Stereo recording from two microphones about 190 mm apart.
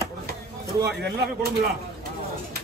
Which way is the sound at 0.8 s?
60° right (ahead or behind).